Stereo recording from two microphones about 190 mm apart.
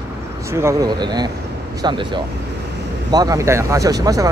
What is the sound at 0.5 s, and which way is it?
Speech, 15° right (ahead or behind).